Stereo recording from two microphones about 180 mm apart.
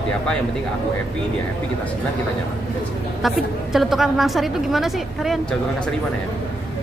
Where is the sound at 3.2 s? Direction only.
Centre (ahead or behind).